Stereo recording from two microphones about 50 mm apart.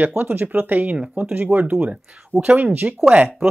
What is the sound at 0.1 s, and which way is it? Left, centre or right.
Speech, right.